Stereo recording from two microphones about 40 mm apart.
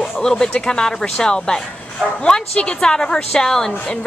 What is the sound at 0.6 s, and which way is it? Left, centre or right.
A woman's voice, centre.